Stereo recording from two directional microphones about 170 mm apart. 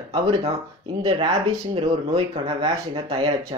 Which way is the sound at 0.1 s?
30° right (ahead or behind).